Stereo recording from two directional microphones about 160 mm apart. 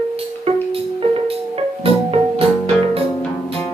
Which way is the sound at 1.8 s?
35° right (ahead or behind).